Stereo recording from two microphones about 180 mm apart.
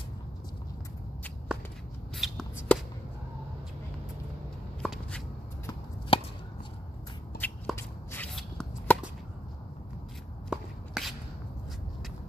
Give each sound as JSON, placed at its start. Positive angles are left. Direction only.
{"t": 2.1, "sound": "shuffle", "side_deg": 0}
{"t": 4.8, "sound": "shuffle", "side_deg": 0}
{"t": 6.1, "sound": "chop", "side_deg": 30}
{"t": 7.3, "sound": "shuffling cards", "side_deg": 10}
{"t": 8.4, "sound": "a sound", "side_deg": 5}
{"t": 10.5, "sound": "shuffle", "side_deg": 0}